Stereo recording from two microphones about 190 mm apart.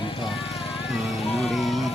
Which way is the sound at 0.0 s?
25° left (ahead or behind).